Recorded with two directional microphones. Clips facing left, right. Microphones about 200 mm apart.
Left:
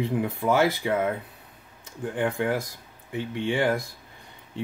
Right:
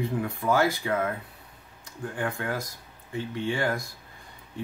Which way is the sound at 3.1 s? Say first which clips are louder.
Left 3 dB; 15° left (ahead or behind).